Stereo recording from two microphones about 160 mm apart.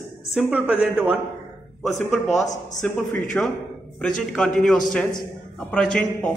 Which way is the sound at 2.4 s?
50° left (ahead or behind).